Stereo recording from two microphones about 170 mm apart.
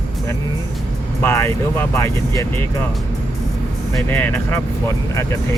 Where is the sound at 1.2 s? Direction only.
15° left (ahead or behind).